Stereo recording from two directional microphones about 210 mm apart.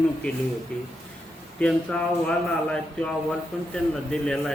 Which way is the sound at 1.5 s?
5° left (ahead or behind).